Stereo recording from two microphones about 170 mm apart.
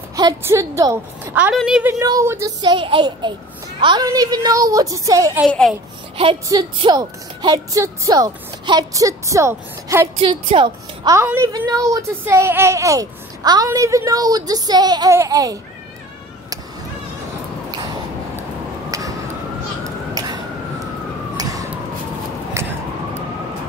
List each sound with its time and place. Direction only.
0.1 s a woman's voice: 20° right (ahead or behind)
2.6 s speech: 30° right (ahead or behind)
5.5 s a child's voice: 5° left (ahead or behind)
6.1 s speech: 30° right (ahead or behind); by 10.0 s 15° right (ahead or behind)
10.2 s speech: 30° right (ahead or behind)
11.1 s speech: 20° right (ahead or behind)
18.9 s a sound: 20° right (ahead or behind)
21.4 s emergency vehicle: 20° right (ahead or behind)
22.6 s police car: 15° right (ahead or behind)